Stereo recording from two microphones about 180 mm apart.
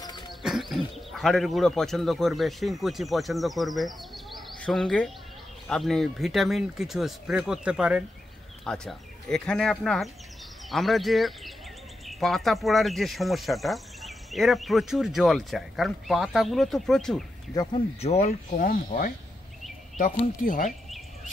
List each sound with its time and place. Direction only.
0.4 s speech: centre (ahead or behind)
17.6 s speech: 35° left (ahead or behind); by 19.1 s 50° left (ahead or behind)
20.4 s speech: 50° left (ahead or behind)